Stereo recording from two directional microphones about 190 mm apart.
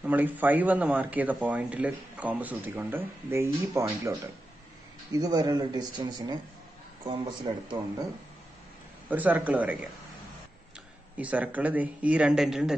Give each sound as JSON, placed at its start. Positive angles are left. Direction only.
{"t": 0.0, "sound": "speech", "side_deg": -10}
{"t": 5.1, "sound": "speech", "side_deg": -20}
{"t": 9.1, "sound": "speech", "side_deg": -10}
{"t": 11.1, "sound": "speech", "side_deg": -10}